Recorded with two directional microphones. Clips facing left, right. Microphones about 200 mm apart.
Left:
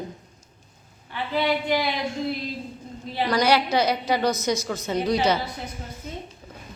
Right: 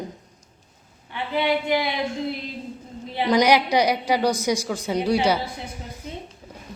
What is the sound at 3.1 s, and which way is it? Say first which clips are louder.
A woman's voice: right 3 dB; 20° right (ahead or behind).